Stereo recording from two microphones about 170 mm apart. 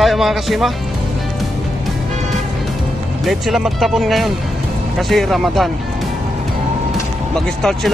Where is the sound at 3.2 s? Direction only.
Centre (ahead or behind).